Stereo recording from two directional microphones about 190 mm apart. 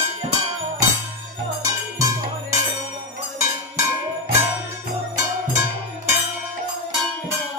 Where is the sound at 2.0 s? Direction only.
15° right (ahead or behind).